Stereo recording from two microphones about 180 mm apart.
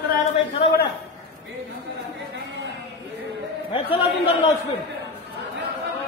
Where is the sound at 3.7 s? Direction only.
30° left (ahead or behind).